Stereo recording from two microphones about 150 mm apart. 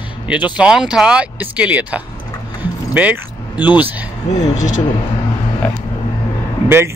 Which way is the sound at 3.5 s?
30° left (ahead or behind).